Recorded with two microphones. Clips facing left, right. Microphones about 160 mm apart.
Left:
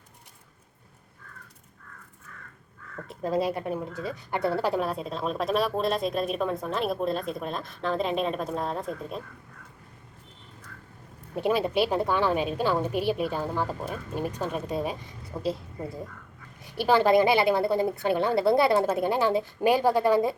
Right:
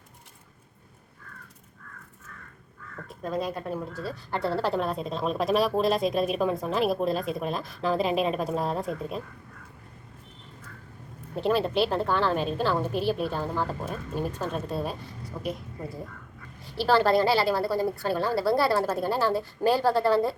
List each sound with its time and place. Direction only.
3.1 s a woman's voice: 25° left (ahead or behind); by 9.2 s 5° right (ahead or behind)
11.3 s a woman's voice: 10° left (ahead or behind)
15.3 s a woman's voice: 25° left (ahead or behind)
16.6 s a woman's voice: 15° left (ahead or behind)